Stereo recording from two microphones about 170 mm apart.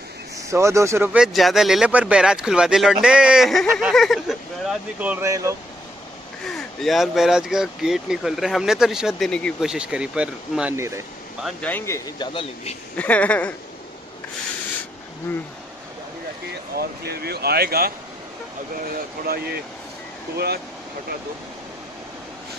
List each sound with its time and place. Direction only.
0.5 s speech: 15° right (ahead or behind)
6.4 s speech: centre (ahead or behind); by 11.0 s 15° right (ahead or behind)
11.4 s speech: 10° left (ahead or behind)
12.3 s speech: 30° left (ahead or behind)
12.9 s speech: 10° left (ahead or behind)
16.7 s speech: 65° right (ahead or behind)
19.2 s speech: 65° right (ahead or behind)